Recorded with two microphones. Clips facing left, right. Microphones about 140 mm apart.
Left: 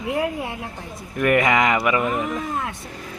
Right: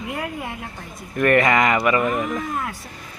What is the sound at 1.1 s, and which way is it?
Speech, 15° left (ahead or behind).